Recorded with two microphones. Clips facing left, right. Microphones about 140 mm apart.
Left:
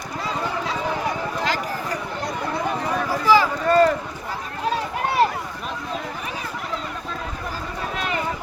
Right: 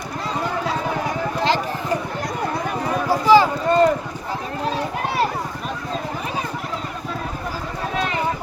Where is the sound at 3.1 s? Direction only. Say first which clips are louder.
Right 4 dB; 30° right (ahead or behind).